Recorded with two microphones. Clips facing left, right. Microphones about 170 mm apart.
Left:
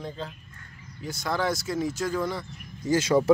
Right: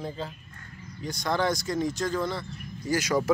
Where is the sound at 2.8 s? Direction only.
25° left (ahead or behind).